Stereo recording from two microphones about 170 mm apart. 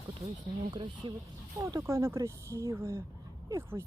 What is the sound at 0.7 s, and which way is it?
Speech, 25° right (ahead or behind).